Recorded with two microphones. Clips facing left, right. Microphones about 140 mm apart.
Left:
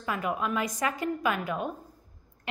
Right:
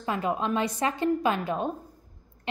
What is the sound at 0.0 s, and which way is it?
A woman's voice, 30° right (ahead or behind).